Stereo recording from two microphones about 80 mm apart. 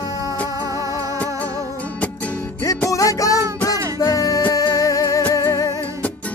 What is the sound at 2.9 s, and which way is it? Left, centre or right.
Music, left.